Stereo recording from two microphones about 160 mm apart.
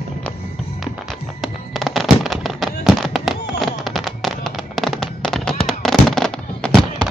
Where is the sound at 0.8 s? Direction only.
Centre (ahead or behind).